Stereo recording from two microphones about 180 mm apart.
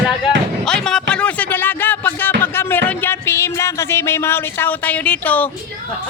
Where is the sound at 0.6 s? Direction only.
5° left (ahead or behind).